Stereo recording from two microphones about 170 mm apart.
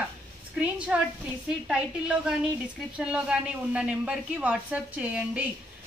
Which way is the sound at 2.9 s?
5° right (ahead or behind).